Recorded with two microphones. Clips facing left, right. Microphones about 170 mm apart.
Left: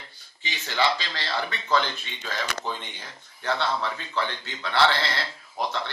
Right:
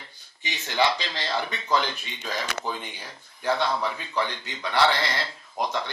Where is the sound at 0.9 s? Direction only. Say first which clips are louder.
Right 1 dB; 15° right (ahead or behind).